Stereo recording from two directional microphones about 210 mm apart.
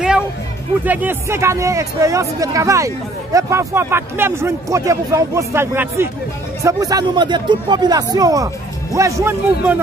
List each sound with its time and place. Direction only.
0.8 s a man's voice: 10° right (ahead or behind)